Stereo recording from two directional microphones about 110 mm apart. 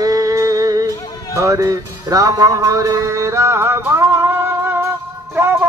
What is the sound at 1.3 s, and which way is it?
Music, 30° right (ahead or behind).